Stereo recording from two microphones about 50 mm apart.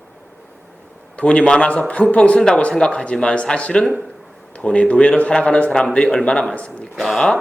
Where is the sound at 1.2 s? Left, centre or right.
Left.